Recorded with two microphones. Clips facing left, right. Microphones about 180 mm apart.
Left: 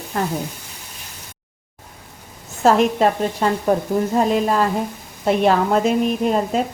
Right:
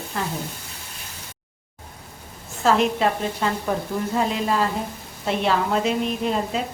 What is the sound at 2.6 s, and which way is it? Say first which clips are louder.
A woman's voice: left 4 dB; 45° left (ahead or behind).